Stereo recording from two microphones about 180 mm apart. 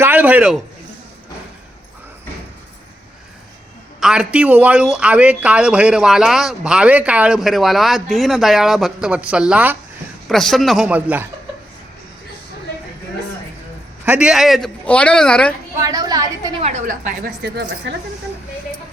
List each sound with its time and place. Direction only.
0.0 s a man's voice: 10° right (ahead or behind)
4.0 s speech: 5° right (ahead or behind)
14.0 s speech: 10° right (ahead or behind)
15.8 s a woman's voice: 20° right (ahead or behind)
16.6 s a woman's voice: 45° right (ahead or behind)
17.4 s a woman's voice: 65° right (ahead or behind)